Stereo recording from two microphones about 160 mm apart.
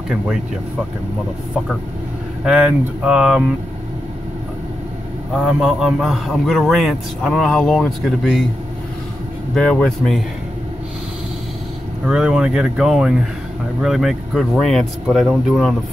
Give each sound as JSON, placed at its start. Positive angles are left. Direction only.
{"t": 2.4, "sound": "a man's voice", "side_deg": -10}
{"t": 5.3, "sound": "a man's voice", "side_deg": -5}
{"t": 9.6, "sound": "a man's voice", "side_deg": 5}
{"t": 12.1, "sound": "a man's voice", "side_deg": -5}